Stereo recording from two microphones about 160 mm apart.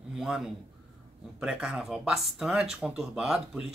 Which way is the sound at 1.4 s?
5° right (ahead or behind).